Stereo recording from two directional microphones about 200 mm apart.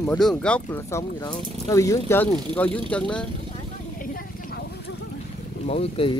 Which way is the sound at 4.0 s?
45° left (ahead or behind).